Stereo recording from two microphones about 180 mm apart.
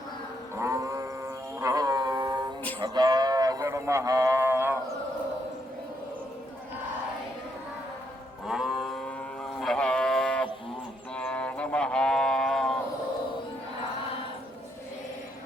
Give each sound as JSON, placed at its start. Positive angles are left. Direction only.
{"t": 0.5, "sound": "livestock", "side_deg": -15}
{"t": 1.5, "sound": "music", "side_deg": -20}
{"t": 2.8, "sound": "speech", "side_deg": -25}
{"t": 8.4, "sound": "moo", "side_deg": -5}
{"t": 9.6, "sound": "livestock", "side_deg": 5}